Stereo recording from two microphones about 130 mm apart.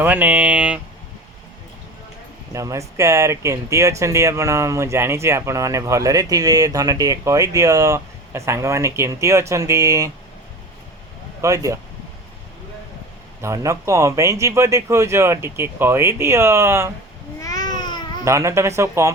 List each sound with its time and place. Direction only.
0.0 s speech: 15° right (ahead or behind)
2.5 s speech: 25° right (ahead or behind)
11.4 s speech: 25° right (ahead or behind)
13.4 s speech: 25° right (ahead or behind)
17.4 s a sound: 30° left (ahead or behind)
18.3 s speech: 20° right (ahead or behind)